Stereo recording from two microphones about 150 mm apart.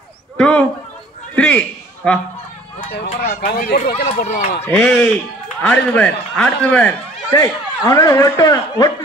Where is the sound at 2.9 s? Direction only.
90° left.